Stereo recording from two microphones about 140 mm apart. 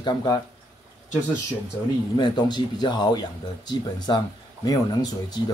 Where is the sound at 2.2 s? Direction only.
30° left (ahead or behind).